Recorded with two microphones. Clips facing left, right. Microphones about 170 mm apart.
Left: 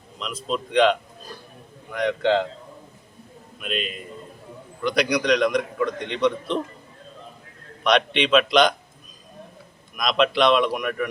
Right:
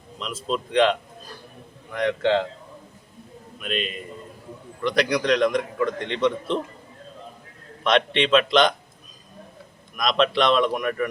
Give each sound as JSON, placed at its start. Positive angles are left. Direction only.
{"t": 0.2, "sound": "a man's voice", "side_deg": 0}
{"t": 3.6, "sound": "a man's voice", "side_deg": 0}
{"t": 7.9, "sound": "a man's voice", "side_deg": 0}
{"t": 10.0, "sound": "a man's voice", "side_deg": 0}